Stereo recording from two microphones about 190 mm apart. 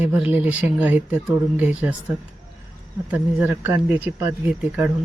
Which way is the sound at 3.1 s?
5° right (ahead or behind).